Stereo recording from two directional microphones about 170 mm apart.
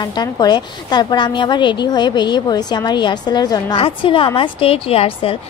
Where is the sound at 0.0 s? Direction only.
25° left (ahead or behind).